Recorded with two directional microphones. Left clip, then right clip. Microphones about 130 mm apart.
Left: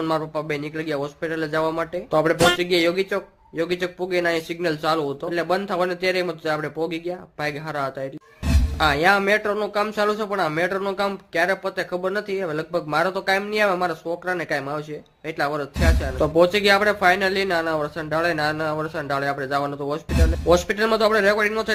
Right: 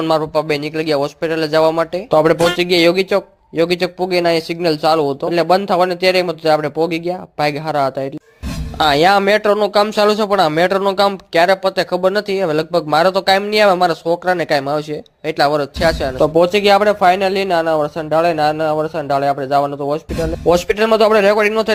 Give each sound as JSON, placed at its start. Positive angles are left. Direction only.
{"t": 0.1, "sound": "speech", "side_deg": -35}
{"t": 2.0, "sound": "speech", "side_deg": -50}
{"t": 16.1, "sound": "speech", "side_deg": -40}
{"t": 20.5, "sound": "speech", "side_deg": -50}